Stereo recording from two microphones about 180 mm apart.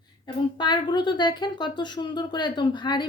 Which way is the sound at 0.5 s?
25° left (ahead or behind).